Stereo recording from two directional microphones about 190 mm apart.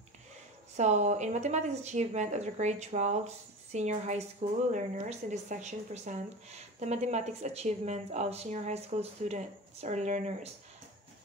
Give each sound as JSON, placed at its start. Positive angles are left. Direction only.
{"t": 0.7, "sound": "speech", "side_deg": -40}